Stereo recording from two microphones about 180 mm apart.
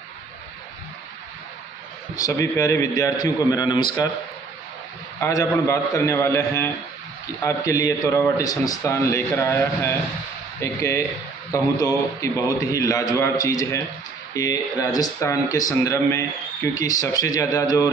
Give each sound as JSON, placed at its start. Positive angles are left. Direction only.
{"t": 2.1, "sound": "a man's voice", "side_deg": 20}
{"t": 5.2, "sound": "a man's voice", "side_deg": 15}